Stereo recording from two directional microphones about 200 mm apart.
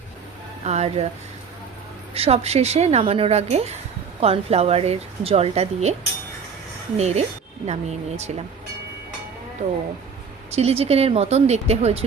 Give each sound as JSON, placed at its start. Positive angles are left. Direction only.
{"t": 0.6, "sound": "speech", "side_deg": -35}
{"t": 2.1, "sound": "a woman's voice", "side_deg": -30}
{"t": 6.9, "sound": "a woman's voice", "side_deg": -35}
{"t": 10.5, "sound": "a woman's voice", "side_deg": -30}